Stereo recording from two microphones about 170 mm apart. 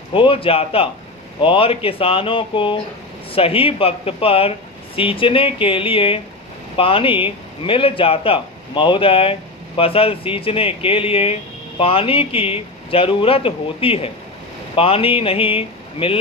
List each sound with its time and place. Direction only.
0.1 s a man's voice: 30° left (ahead or behind)